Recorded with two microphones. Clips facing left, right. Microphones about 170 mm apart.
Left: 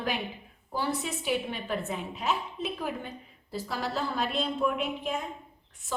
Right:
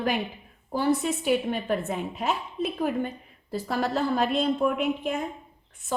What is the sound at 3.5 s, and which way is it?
A woman's voice, 55° right (ahead or behind).